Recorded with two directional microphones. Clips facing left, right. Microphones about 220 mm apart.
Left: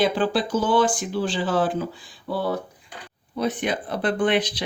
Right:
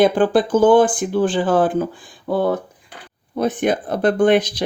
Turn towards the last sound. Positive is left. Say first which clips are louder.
# right 7 dB
turn(degrees=-45)  # may be behind; listen again after turning